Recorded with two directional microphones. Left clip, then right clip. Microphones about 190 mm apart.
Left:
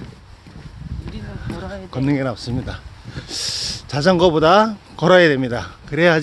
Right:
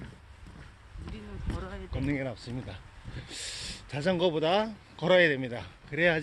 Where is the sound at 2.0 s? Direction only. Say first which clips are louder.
Left 13 dB; 35° left (ahead or behind).